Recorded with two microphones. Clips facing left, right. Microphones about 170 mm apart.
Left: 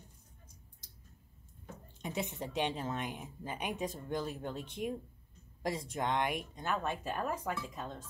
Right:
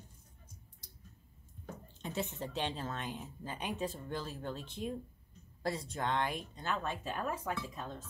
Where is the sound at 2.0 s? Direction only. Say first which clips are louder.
Left 1 dB; 15° left (ahead or behind).